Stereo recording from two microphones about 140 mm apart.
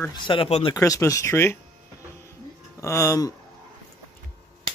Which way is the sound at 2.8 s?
20° left (ahead or behind).